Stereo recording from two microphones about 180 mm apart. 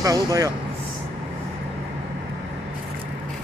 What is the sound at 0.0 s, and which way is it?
Speech, 20° right (ahead or behind).